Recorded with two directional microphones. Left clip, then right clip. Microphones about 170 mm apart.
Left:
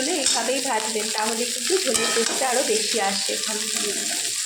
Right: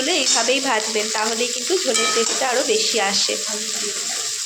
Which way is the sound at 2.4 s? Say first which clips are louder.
Right 3 dB; 5° right (ahead or behind).